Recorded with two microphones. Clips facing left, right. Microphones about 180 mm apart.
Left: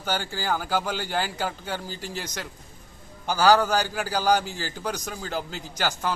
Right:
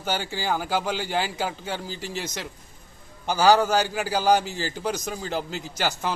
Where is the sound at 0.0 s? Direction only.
10° right (ahead or behind).